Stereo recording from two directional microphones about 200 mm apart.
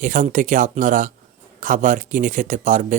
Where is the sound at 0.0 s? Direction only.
40° right (ahead or behind).